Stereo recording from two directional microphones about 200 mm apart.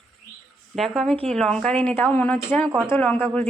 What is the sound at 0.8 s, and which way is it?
Speech, centre (ahead or behind).